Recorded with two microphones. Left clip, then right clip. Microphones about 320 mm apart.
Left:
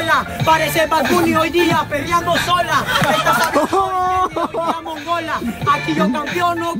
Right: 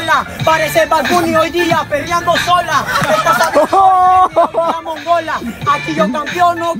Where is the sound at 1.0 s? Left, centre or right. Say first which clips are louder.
Right 3 dB; right.